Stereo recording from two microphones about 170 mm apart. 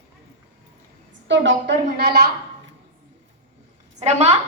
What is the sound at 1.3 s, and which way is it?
Speech, 80° right.